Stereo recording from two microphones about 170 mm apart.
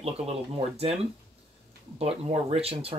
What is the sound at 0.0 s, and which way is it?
Speech, 35° right (ahead or behind).